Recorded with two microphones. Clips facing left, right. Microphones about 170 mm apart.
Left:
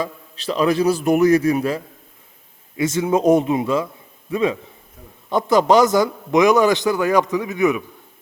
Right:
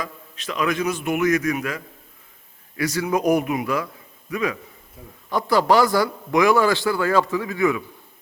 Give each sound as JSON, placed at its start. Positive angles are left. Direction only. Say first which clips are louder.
{"t": 0.0, "sound": "a man's voice", "louder": "left 6 dB", "side_deg": 30}